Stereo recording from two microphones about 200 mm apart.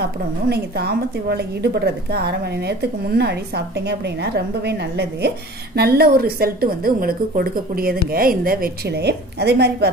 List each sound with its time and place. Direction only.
0.5 s a woman's voice: 55° right (ahead or behind)